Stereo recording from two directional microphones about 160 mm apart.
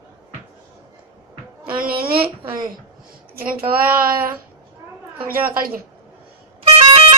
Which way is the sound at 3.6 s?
65° right (ahead or behind).